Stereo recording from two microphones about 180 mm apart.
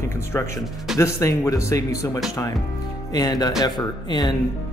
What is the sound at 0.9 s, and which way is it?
Speech, 15° left (ahead or behind).